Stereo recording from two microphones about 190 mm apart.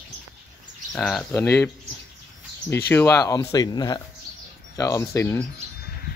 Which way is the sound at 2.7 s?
15° left (ahead or behind).